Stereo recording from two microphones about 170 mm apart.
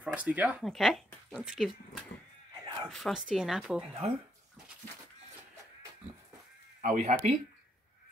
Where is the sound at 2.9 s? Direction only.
Centre (ahead or behind).